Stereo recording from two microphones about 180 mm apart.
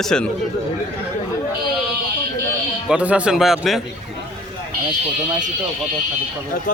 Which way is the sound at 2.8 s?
5° right (ahead or behind).